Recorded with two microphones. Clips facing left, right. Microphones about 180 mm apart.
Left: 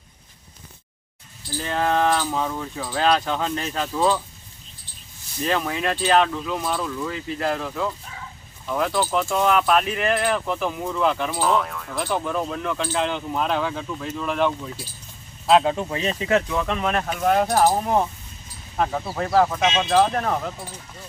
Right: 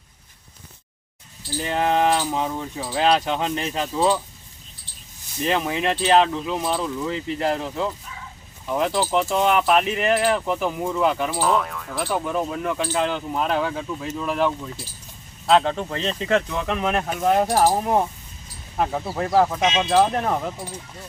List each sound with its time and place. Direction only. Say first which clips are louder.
1.5 s speech: right 1 dB; 15° right (ahead or behind)
5.5 s speech: right 1 dB; 20° right (ahead or behind)
10.2 s speech: right 2 dB; 10° right (ahead or behind)
15.4 s speech: left 1 dB; 10° left (ahead or behind); by 20.5 s 10° right (ahead or behind)